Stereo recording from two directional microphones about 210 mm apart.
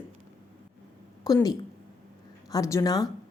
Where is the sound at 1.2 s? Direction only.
15° left (ahead or behind).